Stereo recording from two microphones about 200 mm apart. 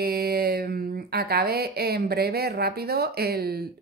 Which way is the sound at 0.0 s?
50° right (ahead or behind).